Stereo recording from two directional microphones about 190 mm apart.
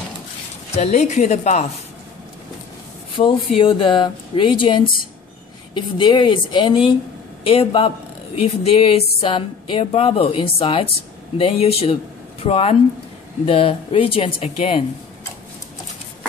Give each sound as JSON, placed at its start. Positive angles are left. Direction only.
{"t": 0.7, "sound": "a woman's voice", "side_deg": 35}
{"t": 3.2, "sound": "a woman's voice", "side_deg": 25}